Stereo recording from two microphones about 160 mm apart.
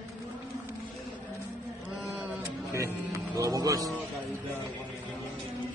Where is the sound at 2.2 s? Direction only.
15° right (ahead or behind).